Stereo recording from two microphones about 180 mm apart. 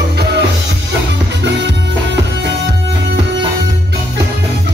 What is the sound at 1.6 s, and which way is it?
Music, 75° right (ahead or behind).